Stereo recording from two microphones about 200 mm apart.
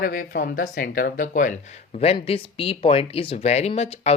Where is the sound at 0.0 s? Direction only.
45° left (ahead or behind).